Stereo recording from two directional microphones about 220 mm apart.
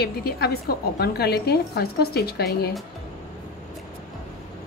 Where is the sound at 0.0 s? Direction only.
45° left (ahead or behind).